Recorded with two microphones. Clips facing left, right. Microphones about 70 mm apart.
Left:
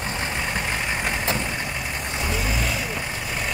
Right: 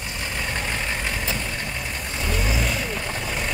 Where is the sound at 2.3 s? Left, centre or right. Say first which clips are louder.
Right 2 dB; centre.